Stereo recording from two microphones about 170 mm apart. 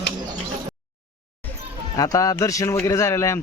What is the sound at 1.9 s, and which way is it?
Speech, 20° left (ahead or behind).